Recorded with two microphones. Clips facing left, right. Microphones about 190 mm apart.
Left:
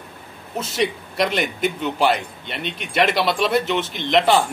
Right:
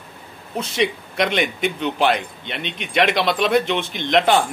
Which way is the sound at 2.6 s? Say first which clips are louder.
Left 1 dB; 45° left (ahead or behind).